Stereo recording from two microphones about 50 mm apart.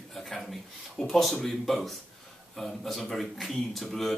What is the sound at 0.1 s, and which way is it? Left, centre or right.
Speech, centre.